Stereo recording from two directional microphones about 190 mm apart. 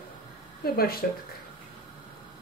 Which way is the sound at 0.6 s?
55° left (ahead or behind).